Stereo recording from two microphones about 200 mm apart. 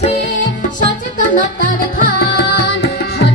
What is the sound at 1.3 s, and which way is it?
Music, 45° left (ahead or behind).